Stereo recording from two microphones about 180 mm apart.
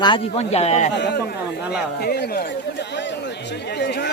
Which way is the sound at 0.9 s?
70° left (ahead or behind).